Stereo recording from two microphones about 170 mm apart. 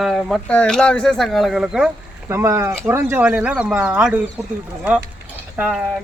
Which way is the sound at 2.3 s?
15° right (ahead or behind).